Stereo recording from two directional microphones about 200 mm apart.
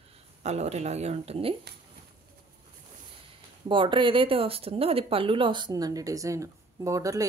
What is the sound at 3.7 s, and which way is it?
Speech, 25° right (ahead or behind).